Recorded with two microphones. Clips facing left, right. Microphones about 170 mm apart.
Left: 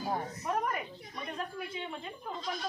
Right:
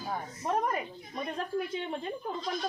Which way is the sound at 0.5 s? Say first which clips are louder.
Right 3 dB; 30° right (ahead or behind).